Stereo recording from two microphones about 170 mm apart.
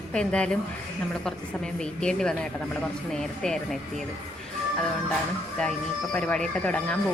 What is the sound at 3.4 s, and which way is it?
Speech, 5° left (ahead or behind).